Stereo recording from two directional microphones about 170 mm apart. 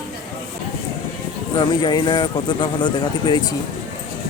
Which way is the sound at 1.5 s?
25° left (ahead or behind).